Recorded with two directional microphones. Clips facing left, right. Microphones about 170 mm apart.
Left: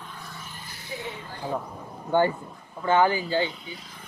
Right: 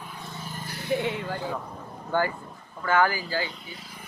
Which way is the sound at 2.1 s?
25° left (ahead or behind).